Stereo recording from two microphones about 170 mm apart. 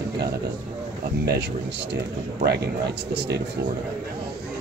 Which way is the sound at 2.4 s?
70° right (ahead or behind).